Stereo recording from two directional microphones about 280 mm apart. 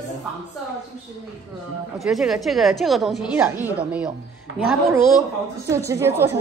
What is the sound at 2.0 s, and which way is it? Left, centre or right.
A woman's voice, centre.